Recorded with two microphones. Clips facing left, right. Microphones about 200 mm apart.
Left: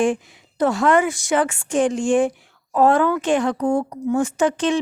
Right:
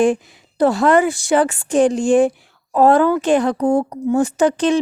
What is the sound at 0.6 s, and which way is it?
Speech, 35° right (ahead or behind).